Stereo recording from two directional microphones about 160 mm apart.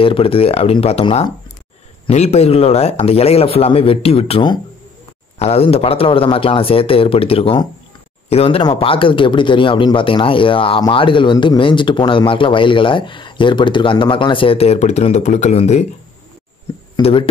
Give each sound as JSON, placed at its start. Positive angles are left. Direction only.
{"t": 0.0, "sound": "speech", "side_deg": 35}